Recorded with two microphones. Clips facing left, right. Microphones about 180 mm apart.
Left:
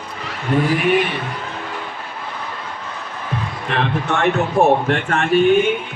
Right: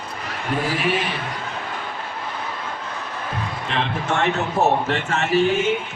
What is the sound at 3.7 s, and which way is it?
A man's voice, 60° left (ahead or behind).